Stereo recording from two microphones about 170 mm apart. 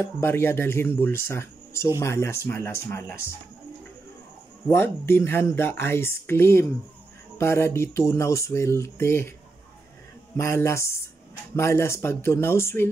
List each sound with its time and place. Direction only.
0.0 s speech: 15° left (ahead or behind)
4.6 s speech: 15° left (ahead or behind)
10.3 s speech: 15° left (ahead or behind)